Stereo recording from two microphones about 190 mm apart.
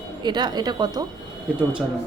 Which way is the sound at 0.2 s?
20° right (ahead or behind).